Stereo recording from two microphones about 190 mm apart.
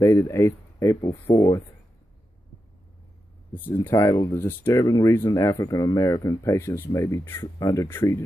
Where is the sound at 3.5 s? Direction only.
10° left (ahead or behind).